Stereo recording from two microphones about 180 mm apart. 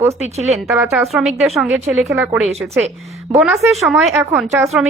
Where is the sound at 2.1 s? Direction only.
15° right (ahead or behind).